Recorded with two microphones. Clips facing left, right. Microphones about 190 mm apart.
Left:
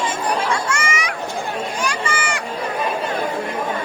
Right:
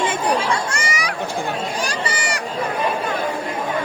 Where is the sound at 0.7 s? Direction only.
35° right (ahead or behind).